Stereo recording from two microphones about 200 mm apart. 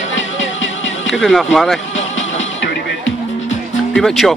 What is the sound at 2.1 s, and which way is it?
Music, 70° left (ahead or behind).